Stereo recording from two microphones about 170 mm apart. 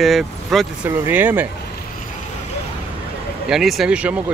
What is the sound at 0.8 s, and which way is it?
Speech, 10° right (ahead or behind).